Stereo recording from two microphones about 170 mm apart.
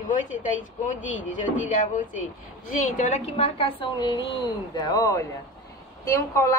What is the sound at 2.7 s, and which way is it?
A woman's voice, 45° left (ahead or behind).